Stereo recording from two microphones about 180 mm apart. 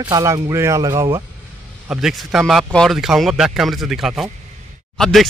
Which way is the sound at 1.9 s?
Centre (ahead or behind).